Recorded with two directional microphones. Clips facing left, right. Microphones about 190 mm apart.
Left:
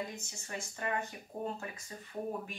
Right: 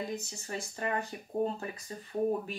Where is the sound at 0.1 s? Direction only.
35° right (ahead or behind).